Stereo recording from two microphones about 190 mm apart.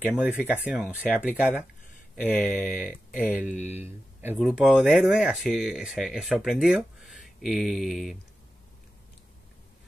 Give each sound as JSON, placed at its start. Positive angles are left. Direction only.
{"t": 0.0, "sound": "speech", "side_deg": -5}
{"t": 2.3, "sound": "speech", "side_deg": 5}
{"t": 2.7, "sound": "speech", "side_deg": 45}
{"t": 3.3, "sound": "speech", "side_deg": -10}